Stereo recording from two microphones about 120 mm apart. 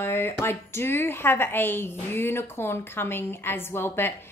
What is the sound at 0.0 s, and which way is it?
A woman's voice, 20° left (ahead or behind).